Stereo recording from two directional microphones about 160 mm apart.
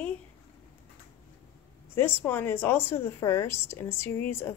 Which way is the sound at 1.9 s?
15° left (ahead or behind).